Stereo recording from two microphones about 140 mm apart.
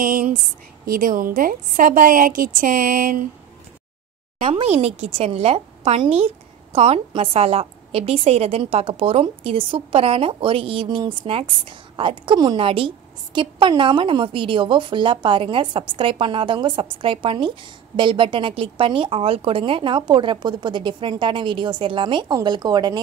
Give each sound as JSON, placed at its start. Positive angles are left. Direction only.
{"t": 0.0, "sound": "speech", "side_deg": -75}
{"t": 0.8, "sound": "a woman's voice", "side_deg": -85}
{"t": 4.5, "sound": "a woman's voice", "side_deg": -45}